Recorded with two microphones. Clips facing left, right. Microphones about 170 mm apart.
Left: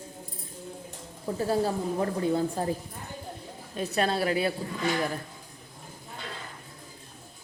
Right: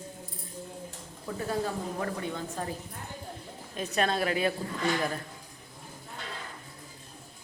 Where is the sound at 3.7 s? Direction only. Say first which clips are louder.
Left 2 dB; 30° left (ahead or behind).